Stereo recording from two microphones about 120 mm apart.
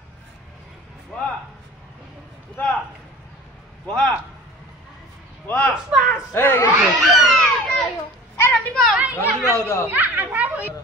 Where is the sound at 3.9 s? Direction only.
5° left (ahead or behind).